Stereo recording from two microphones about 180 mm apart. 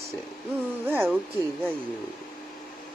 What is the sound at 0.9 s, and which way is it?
Speech, 10° right (ahead or behind).